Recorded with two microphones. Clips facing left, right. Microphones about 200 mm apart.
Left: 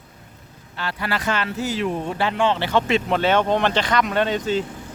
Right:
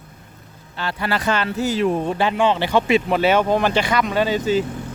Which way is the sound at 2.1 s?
15° right (ahead or behind).